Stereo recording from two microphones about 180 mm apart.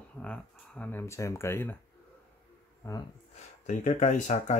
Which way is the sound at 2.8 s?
15° left (ahead or behind).